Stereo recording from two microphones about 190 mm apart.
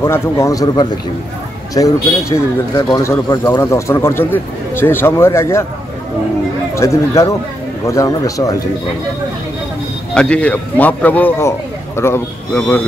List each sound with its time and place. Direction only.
0.0 s speech: 15° left (ahead or behind)
6.7 s a man's voice: 15° left (ahead or behind)
10.1 s speech: 5° left (ahead or behind)